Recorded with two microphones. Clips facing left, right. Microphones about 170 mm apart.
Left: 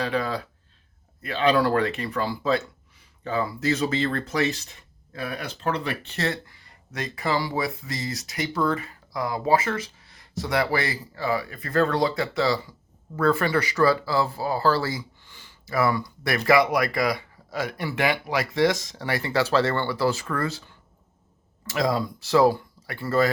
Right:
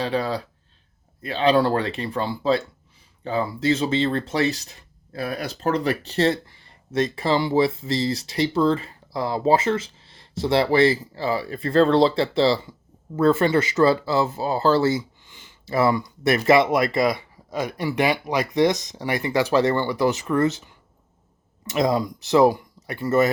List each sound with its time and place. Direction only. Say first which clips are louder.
0.0 s speech: right 2 dB; 30° right (ahead or behind)